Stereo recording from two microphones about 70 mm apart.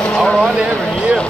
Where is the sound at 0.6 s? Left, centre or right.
Centre.